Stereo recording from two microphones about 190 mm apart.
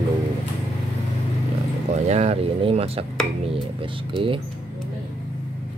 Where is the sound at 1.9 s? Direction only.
35° right (ahead or behind).